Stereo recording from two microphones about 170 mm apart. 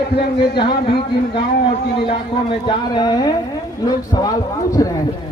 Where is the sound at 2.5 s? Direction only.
30° left (ahead or behind).